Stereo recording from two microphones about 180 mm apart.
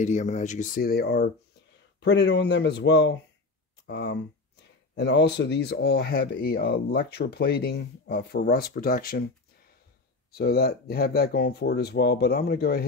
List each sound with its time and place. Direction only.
0.0 s speech: 40° left (ahead or behind)
10.3 s speech: 60° left (ahead or behind)